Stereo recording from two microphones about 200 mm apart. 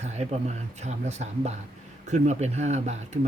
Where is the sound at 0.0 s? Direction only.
35° right (ahead or behind).